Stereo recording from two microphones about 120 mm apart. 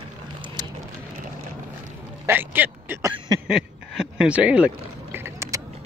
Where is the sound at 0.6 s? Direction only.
35° right (ahead or behind).